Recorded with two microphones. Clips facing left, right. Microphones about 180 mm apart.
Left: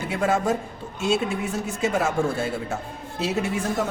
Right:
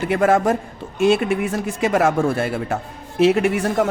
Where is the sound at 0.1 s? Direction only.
65° right (ahead or behind).